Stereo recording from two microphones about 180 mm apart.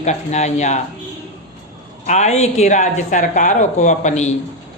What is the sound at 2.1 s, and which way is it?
Speech, 40° left (ahead or behind).